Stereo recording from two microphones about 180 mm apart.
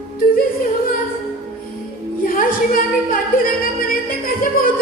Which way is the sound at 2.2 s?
50° left (ahead or behind).